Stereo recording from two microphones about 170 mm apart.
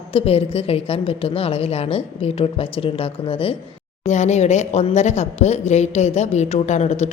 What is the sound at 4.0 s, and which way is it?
A woman's voice, 40° left (ahead or behind).